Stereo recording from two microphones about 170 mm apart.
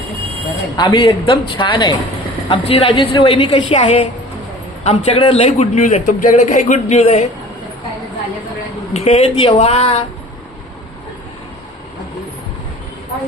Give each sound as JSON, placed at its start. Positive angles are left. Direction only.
{"t": 0.8, "sound": "a man's voice", "side_deg": 30}
{"t": 8.9, "sound": "a man's voice", "side_deg": 35}